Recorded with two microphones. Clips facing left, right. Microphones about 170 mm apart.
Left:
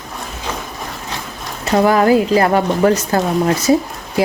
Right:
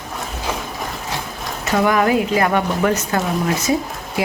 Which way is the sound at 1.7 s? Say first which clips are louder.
Left 4 dB; 35° left (ahead or behind).